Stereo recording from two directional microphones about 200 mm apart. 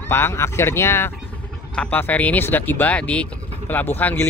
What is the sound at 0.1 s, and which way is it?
Speech, 10° left (ahead or behind).